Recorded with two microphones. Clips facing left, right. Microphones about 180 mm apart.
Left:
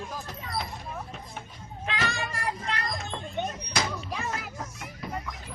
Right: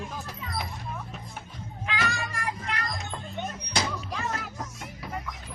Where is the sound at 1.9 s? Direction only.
35° left (ahead or behind).